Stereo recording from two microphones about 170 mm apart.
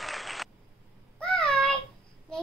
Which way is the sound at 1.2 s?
5° left (ahead or behind).